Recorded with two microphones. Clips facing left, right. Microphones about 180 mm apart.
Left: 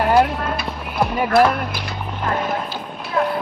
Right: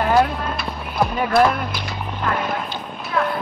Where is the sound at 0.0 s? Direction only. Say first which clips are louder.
Left 1 dB; 5° left (ahead or behind).